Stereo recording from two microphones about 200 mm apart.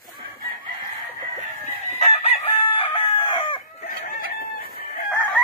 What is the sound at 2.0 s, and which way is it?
Chicken, 30° left (ahead or behind).